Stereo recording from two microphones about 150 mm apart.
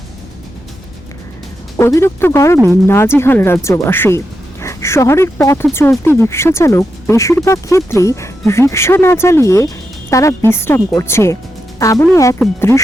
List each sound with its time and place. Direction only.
1.7 s speech: 20° left (ahead or behind)